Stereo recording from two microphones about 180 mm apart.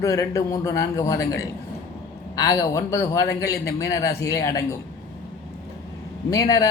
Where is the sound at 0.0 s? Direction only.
20° left (ahead or behind).